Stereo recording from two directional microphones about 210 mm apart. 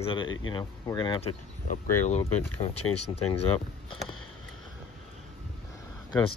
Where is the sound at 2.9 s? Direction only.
90° left.